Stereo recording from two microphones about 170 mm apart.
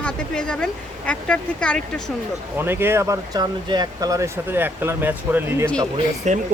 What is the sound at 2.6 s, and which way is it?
Speech, 15° right (ahead or behind).